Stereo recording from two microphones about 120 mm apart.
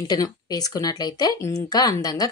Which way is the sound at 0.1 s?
30° left (ahead or behind).